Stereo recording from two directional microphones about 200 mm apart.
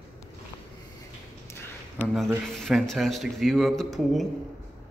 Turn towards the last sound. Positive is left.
turn(degrees=0)  # may be behind; listen again after turning